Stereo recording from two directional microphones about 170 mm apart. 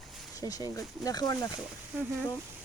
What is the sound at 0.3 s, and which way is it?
Speech, 20° left (ahead or behind).